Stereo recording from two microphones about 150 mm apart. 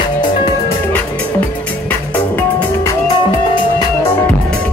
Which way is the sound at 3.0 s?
25° left (ahead or behind).